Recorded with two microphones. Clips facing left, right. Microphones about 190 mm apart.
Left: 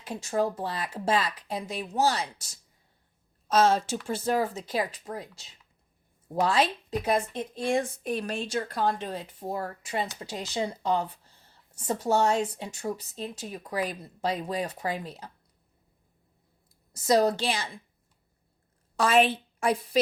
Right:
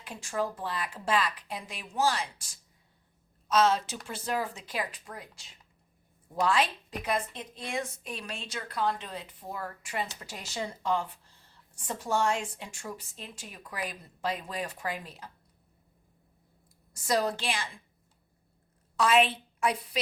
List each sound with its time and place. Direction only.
0.0 s speech: 40° left (ahead or behind)
2.0 s speech: 20° left (ahead or behind)
2.2 s speech: 40° left (ahead or behind)
17.2 s speech: 40° left (ahead or behind)
18.9 s a woman's voice: 45° left (ahead or behind)